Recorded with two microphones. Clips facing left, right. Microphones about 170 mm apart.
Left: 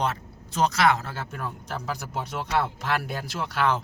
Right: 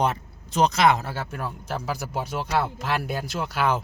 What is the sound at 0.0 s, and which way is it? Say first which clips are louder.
Speech: right 3 dB; 15° right (ahead or behind).